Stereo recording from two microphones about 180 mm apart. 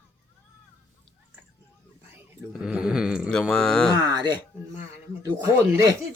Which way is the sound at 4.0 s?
20° right (ahead or behind).